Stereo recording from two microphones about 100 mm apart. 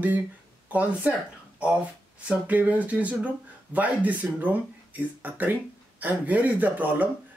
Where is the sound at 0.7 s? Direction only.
15° right (ahead or behind).